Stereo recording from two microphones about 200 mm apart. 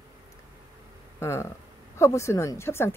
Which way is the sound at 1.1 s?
15° left (ahead or behind).